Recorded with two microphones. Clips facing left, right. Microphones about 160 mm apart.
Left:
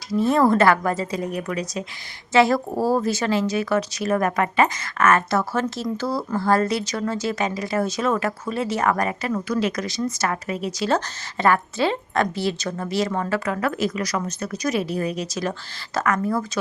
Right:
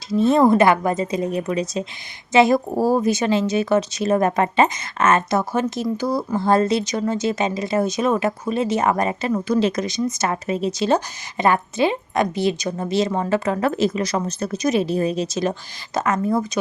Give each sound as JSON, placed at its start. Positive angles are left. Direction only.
{"t": 0.1, "sound": "speech", "side_deg": -25}